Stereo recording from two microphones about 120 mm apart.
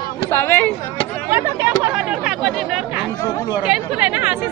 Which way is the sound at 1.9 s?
10° right (ahead or behind).